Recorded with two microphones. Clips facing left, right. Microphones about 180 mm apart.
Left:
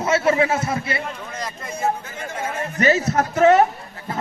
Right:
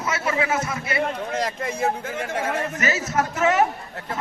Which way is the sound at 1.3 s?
80° right.